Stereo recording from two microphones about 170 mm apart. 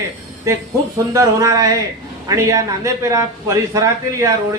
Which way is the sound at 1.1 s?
20° right (ahead or behind).